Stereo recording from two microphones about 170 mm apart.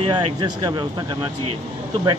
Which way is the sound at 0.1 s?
25° right (ahead or behind).